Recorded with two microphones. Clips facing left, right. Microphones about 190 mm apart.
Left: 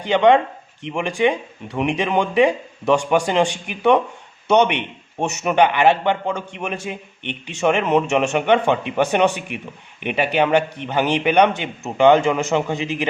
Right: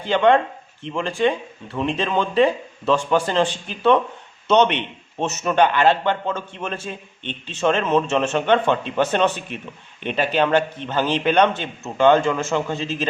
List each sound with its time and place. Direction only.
0.0 s a man's voice: 15° left (ahead or behind)